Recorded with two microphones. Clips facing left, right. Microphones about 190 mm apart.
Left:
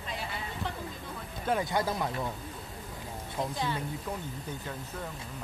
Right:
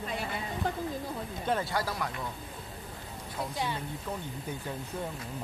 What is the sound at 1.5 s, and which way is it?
Speech, 20° left (ahead or behind).